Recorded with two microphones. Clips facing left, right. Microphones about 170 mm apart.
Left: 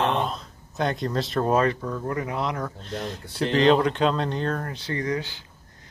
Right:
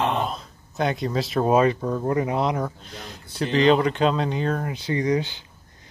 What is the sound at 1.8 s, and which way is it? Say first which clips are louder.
Speech: right 5 dB; 25° right (ahead or behind).